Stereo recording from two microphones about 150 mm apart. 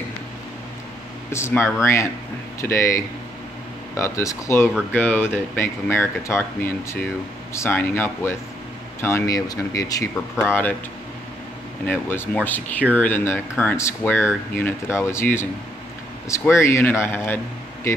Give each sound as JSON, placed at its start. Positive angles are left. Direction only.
{"t": 1.3, "sound": "speech", "side_deg": 15}
{"t": 3.9, "sound": "speech", "side_deg": 20}
{"t": 11.8, "sound": "speech", "side_deg": 10}